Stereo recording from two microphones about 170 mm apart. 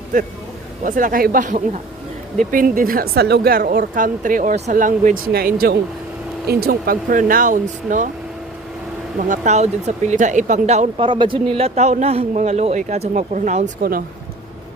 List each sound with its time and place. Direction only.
0.9 s a woman's voice: 55° right (ahead or behind)
9.3 s speech: 45° right (ahead or behind)